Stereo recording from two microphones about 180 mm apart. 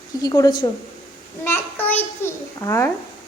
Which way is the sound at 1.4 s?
10° left (ahead or behind).